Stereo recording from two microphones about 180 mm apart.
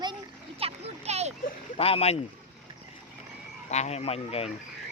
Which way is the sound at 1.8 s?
35° left (ahead or behind).